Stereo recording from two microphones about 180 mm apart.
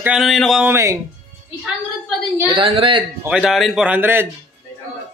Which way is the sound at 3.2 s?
5° right (ahead or behind).